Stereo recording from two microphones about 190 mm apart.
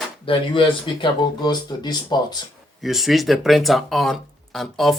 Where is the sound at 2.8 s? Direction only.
Centre (ahead or behind).